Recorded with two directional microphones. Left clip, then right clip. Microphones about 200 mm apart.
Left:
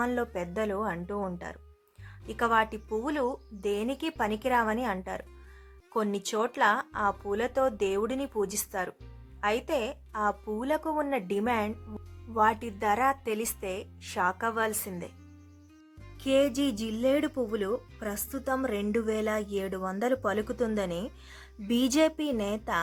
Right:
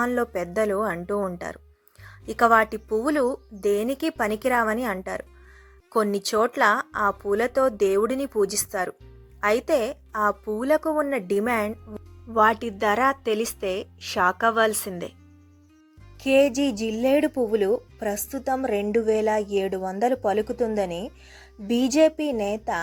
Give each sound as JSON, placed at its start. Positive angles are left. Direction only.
{"t": 0.0, "sound": "a woman's voice", "side_deg": -15}
{"t": 16.2, "sound": "a woman's voice", "side_deg": -15}